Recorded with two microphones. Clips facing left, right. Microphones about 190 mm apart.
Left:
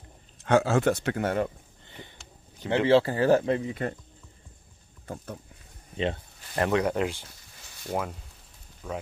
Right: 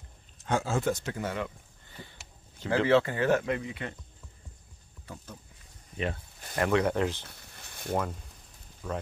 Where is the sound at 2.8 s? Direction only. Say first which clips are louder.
Left 3 dB; 30° left (ahead or behind).